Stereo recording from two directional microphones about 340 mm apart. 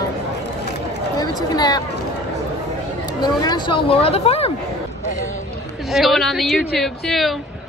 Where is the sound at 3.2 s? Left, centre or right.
Centre.